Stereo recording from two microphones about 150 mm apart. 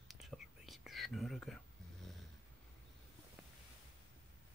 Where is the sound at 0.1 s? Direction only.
Centre (ahead or behind).